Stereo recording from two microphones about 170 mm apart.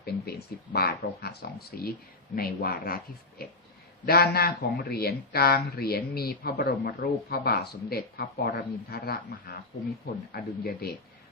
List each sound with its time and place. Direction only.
0.0 s speech: 70° left (ahead or behind)